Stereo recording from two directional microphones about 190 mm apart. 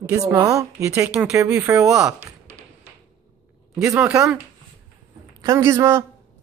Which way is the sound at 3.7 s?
5° right (ahead or behind).